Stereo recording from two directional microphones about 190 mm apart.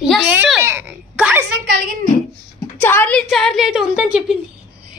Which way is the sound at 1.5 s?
55° right (ahead or behind).